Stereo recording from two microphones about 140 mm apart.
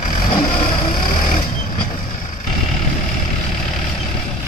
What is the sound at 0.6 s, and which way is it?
Vehicle, 40° left (ahead or behind).